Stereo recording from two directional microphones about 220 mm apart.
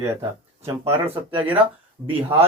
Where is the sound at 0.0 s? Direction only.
10° right (ahead or behind).